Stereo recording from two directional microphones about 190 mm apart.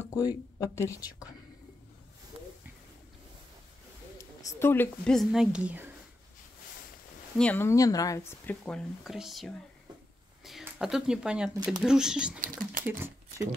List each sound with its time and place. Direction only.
0.1 s speech: 20° left (ahead or behind)
4.2 s speech: 15° left (ahead or behind); by 5.9 s 5° right (ahead or behind)
7.3 s speech: 10° left (ahead or behind)
10.6 s speech: 5° right (ahead or behind)